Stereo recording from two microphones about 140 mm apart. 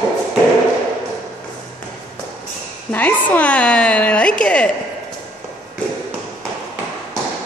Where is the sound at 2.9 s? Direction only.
10° left (ahead or behind).